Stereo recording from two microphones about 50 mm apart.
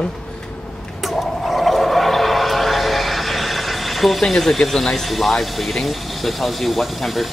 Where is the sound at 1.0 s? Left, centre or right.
Centre.